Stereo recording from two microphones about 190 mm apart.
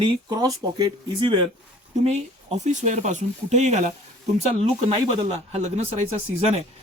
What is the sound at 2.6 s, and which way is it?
Speech, 40° right (ahead or behind).